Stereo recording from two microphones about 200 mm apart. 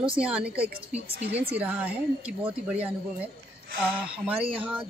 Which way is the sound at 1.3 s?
30° right (ahead or behind).